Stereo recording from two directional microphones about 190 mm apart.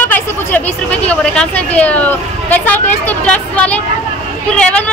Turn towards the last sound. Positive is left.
turn(degrees=5)  # may be behind; listen again after turning